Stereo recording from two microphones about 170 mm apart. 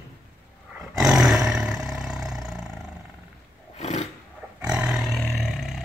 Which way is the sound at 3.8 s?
40° left (ahead or behind).